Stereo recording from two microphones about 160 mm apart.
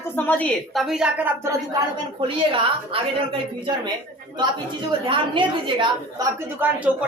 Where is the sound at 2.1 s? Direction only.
30° right (ahead or behind).